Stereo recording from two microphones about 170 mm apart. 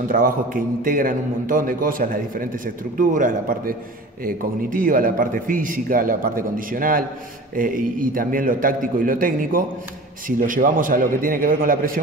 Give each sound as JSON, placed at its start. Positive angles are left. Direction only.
{"t": 0.1, "sound": "a man's voice", "side_deg": -55}